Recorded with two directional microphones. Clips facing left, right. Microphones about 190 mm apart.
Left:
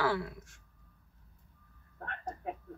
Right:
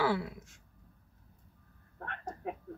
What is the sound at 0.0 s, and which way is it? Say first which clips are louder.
Speech: right 1 dB; 20° right (ahead or behind).